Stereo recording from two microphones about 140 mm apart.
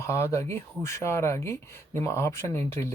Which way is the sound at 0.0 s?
20° left (ahead or behind).